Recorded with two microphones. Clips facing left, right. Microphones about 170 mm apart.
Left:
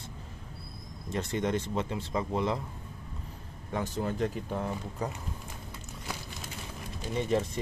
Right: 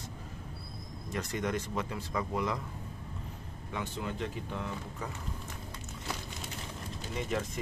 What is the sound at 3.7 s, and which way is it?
Speech, 40° left (ahead or behind).